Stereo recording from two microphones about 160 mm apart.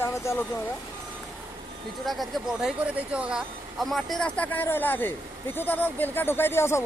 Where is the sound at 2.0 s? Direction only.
Centre (ahead or behind).